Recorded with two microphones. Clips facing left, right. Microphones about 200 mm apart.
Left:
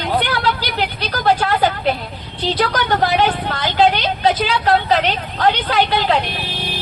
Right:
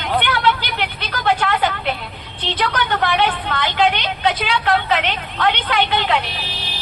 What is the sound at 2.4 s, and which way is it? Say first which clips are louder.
A woman's voice: left 3 dB; 40° left (ahead or behind).